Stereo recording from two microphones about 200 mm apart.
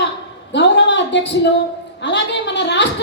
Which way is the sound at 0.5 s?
60° left (ahead or behind).